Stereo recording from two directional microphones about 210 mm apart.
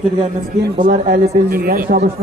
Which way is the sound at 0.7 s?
35° right (ahead or behind).